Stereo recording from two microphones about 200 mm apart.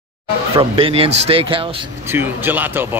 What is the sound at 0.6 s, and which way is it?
Speech, 25° right (ahead or behind).